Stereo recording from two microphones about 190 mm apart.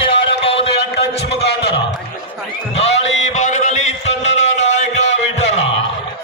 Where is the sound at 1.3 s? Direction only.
60° left (ahead or behind).